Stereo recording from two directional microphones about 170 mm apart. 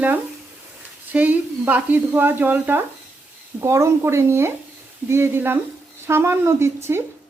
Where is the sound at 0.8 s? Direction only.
10° right (ahead or behind).